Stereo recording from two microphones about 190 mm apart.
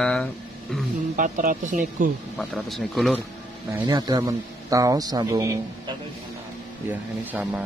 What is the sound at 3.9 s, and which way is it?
A man's voice, 20° right (ahead or behind).